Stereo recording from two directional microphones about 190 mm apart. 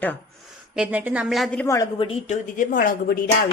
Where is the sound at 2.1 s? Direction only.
40° left (ahead or behind).